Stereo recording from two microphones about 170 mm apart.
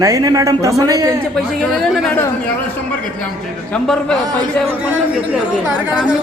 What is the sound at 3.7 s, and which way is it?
Speech, 5° left (ahead or behind).